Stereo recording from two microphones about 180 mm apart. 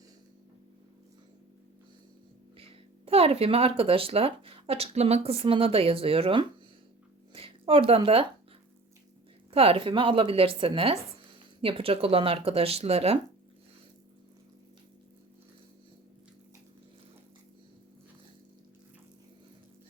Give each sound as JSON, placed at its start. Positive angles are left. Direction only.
{"t": 2.6, "sound": "a woman's voice", "side_deg": -30}
{"t": 9.5, "sound": "speech", "side_deg": -30}